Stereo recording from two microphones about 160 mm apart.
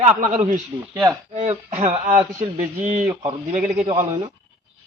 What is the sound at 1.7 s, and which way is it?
Speech, 45° right (ahead or behind).